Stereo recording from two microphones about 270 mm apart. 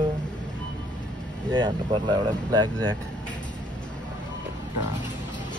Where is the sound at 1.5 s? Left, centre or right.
Centre.